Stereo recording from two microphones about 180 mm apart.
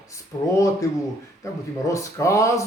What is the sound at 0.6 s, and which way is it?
Speech, 20° left (ahead or behind).